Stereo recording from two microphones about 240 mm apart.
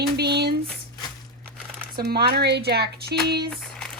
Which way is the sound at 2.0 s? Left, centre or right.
Right.